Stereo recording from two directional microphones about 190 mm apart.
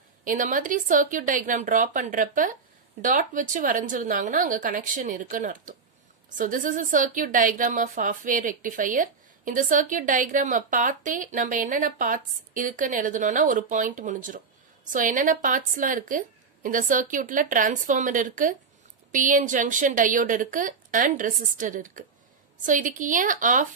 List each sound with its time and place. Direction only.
0.2 s a woman's voice: 45° right (ahead or behind)